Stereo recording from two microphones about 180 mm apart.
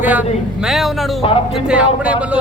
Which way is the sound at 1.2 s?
30° left (ahead or behind).